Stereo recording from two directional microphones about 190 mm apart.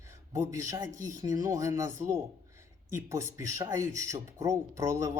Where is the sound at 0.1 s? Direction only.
15° right (ahead or behind).